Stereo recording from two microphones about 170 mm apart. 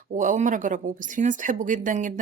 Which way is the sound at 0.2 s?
50° right (ahead or behind).